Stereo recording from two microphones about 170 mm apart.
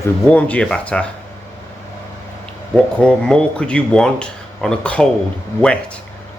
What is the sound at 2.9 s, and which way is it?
Speech, 5° left (ahead or behind).